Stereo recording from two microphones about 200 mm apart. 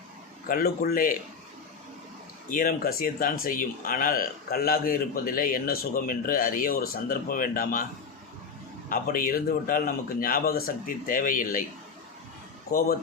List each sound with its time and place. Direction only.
0.4 s speech: 45° left (ahead or behind)
2.5 s speech: 45° left (ahead or behind)
8.9 s speech: 45° left (ahead or behind)